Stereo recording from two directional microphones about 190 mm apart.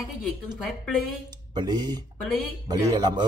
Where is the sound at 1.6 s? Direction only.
20° right (ahead or behind).